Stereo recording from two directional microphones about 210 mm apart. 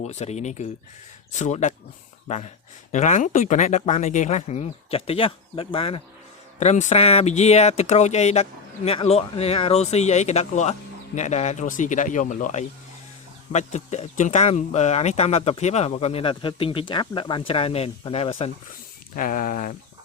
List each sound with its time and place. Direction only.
0.0 s speech: 30° left (ahead or behind)
19.1 s speech: 40° left (ahead or behind)